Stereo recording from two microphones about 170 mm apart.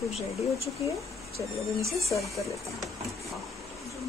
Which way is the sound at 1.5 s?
Centre (ahead or behind).